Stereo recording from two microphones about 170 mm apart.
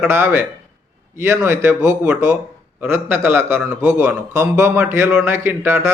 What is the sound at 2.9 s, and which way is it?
A man's voice, 15° right (ahead or behind).